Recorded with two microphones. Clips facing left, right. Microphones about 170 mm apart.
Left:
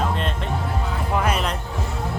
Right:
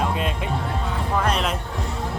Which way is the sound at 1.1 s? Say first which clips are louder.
Even; 5° left (ahead or behind).